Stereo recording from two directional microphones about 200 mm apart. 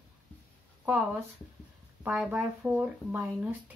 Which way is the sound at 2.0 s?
5° right (ahead or behind).